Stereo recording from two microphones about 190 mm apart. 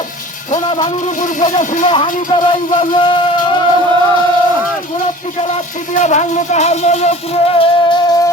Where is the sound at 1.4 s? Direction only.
40° left (ahead or behind).